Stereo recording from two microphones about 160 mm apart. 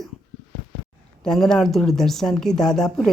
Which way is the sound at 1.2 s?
Centre (ahead or behind).